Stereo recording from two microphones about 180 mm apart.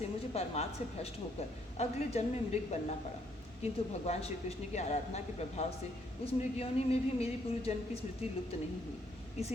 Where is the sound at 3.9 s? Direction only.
35° left (ahead or behind).